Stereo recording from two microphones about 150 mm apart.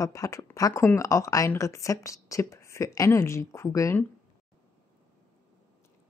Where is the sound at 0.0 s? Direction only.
20° left (ahead or behind).